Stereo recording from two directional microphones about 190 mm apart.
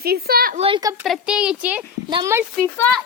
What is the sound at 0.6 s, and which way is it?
Speech, 25° right (ahead or behind).